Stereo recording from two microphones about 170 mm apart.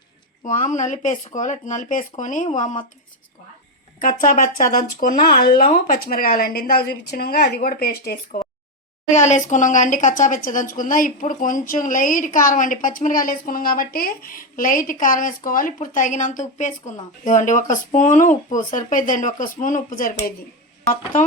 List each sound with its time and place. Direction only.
0.4 s a woman's voice: 50° left (ahead or behind)
4.0 s speech: 50° left (ahead or behind)
9.0 s a woman's voice: 45° left (ahead or behind)